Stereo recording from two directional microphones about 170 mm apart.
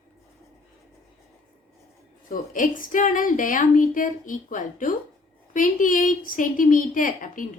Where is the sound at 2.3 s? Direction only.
50° left (ahead or behind).